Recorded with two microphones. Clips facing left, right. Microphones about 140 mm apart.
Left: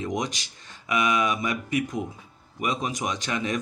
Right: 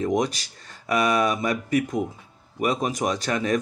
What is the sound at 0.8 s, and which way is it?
Speech, 40° right (ahead or behind).